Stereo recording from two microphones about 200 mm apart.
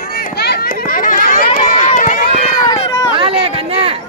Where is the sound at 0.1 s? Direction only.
50° left (ahead or behind).